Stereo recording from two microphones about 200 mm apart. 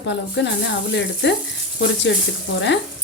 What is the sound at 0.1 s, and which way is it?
Speech, 60° left (ahead or behind).